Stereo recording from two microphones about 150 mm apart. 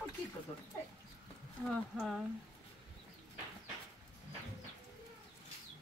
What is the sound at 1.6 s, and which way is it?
Speech, 5° left (ahead or behind).